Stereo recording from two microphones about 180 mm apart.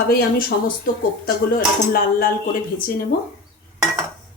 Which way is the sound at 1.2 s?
55° left (ahead or behind).